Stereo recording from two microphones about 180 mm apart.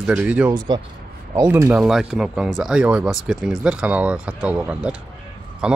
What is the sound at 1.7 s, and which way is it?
Speech, 5° right (ahead or behind).